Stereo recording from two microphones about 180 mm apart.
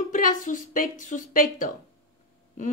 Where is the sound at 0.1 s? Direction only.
45° left (ahead or behind).